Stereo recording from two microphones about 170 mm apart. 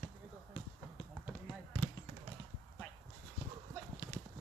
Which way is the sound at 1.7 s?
10° right (ahead or behind).